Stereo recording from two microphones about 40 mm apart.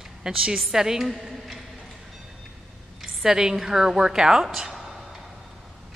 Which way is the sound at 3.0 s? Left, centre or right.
Centre.